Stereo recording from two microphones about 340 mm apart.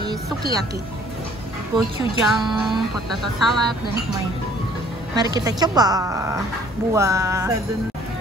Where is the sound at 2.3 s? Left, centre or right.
Centre.